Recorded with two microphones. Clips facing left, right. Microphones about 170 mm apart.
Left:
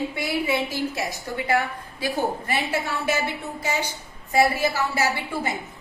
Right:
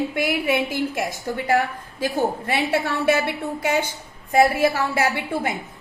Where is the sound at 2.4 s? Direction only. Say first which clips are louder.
Right 4 dB; 65° right (ahead or behind).